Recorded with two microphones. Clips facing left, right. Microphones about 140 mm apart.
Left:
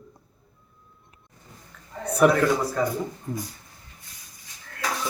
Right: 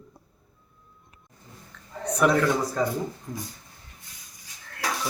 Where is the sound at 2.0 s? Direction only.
10° left (ahead or behind).